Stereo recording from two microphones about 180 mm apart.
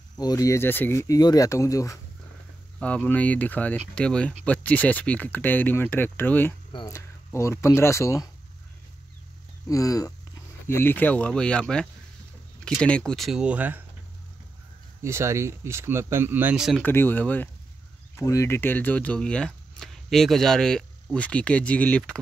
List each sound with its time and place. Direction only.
0.2 s speech: 20° left (ahead or behind)
2.8 s speech: 5° left (ahead or behind)
9.7 s speech: 20° left (ahead or behind); by 13.8 s 10° right (ahead or behind)
15.0 s speech: 15° right (ahead or behind)
16.8 s speech: 10° left (ahead or behind)